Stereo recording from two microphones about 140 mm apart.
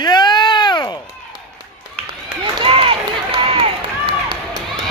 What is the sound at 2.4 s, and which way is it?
Run, 35° right (ahead or behind).